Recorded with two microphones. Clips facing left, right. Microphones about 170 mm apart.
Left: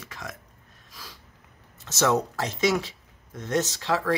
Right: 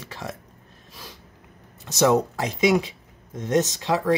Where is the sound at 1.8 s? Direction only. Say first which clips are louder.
Right 4 dB; 15° right (ahead or behind).